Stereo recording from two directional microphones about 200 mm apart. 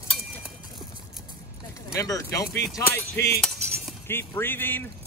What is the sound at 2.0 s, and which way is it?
A man's voice, 15° left (ahead or behind).